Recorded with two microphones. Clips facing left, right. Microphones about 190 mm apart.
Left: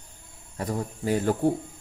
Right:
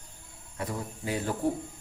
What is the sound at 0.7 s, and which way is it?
Speech, 45° left (ahead or behind).